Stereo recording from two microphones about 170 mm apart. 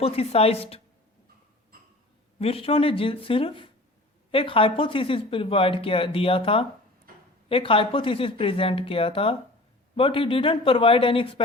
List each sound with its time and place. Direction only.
0.0 s speech: 35° left (ahead or behind)
2.4 s speech: 35° left (ahead or behind)